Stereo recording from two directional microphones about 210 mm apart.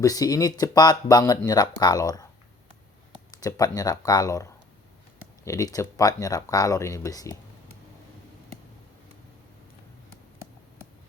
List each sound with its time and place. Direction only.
0.0 s speech: 15° left (ahead or behind)
3.3 s speech: 15° left (ahead or behind)